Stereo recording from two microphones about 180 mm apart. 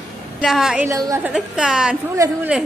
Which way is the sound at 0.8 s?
15° right (ahead or behind).